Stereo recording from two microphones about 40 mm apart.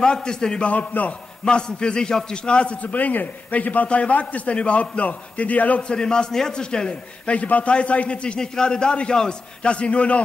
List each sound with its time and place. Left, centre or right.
0.0 s a man's voice: centre
0.7 s a man's voice: left
1.4 s a man's voice: left
5.8 s a man's voice: left